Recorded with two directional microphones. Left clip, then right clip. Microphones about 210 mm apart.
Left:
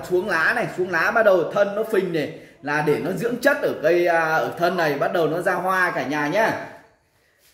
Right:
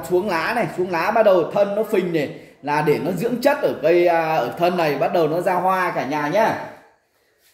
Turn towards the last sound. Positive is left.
turn(degrees=10)  # may be behind; listen again after turning